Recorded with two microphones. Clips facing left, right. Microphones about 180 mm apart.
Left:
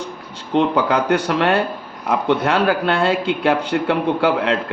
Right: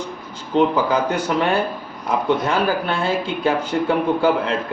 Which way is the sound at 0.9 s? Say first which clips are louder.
Left 2 dB; 65° left (ahead or behind).